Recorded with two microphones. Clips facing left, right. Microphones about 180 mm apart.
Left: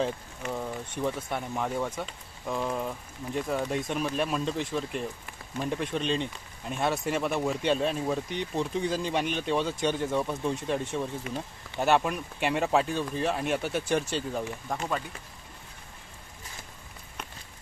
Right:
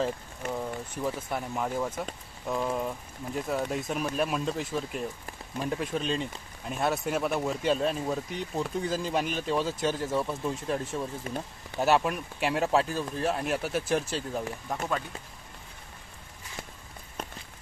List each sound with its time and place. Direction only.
0.5 s speech: 5° right (ahead or behind)
11.3 s speech: 40° right (ahead or behind)
11.8 s speech: centre (ahead or behind)